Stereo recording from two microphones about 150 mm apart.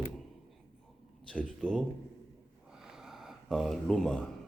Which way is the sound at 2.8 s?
5° right (ahead or behind).